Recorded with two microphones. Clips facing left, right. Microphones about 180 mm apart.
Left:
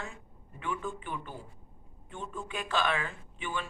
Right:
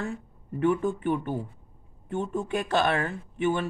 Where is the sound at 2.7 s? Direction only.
55° right (ahead or behind).